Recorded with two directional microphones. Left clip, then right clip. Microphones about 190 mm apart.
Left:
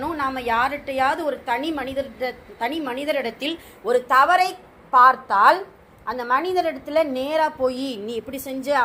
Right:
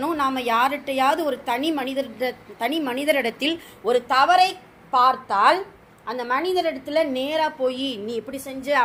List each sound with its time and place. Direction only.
0.0 s a woman's voice: 25° right (ahead or behind)
3.8 s a woman's voice: 10° right (ahead or behind)